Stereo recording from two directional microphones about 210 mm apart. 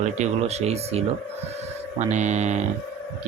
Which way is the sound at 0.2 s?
30° right (ahead or behind).